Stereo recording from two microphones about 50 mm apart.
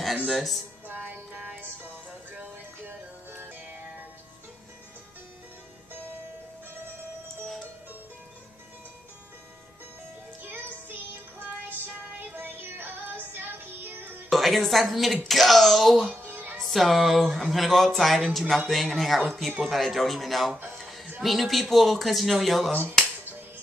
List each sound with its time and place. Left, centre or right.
0.3 s speech: centre
0.8 s music: right
2.9 s music: right
10.4 s music: right
12.3 s music: right
14.3 s a woman's voice: centre
16.2 s music: right
16.5 s speech: centre
20.7 s a sound: centre
21.2 s speech: centre